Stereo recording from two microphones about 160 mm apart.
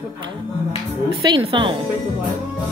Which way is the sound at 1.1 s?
30° right (ahead or behind).